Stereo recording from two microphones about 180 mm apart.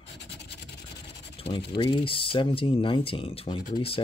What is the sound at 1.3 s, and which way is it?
Speech, 30° left (ahead or behind).